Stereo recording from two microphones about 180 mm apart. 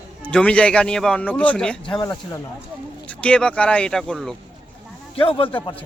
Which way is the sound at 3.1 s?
5° left (ahead or behind).